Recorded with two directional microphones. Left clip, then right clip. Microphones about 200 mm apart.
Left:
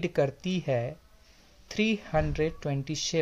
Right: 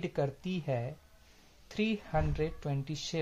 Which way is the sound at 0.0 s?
30° left (ahead or behind).